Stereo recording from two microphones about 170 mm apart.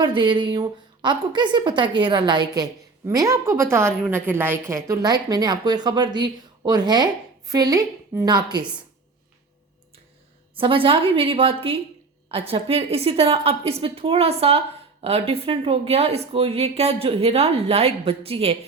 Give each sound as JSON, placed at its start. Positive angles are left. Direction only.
{"t": 0.0, "sound": "a woman's voice", "side_deg": -30}
{"t": 10.5, "sound": "a woman's voice", "side_deg": -30}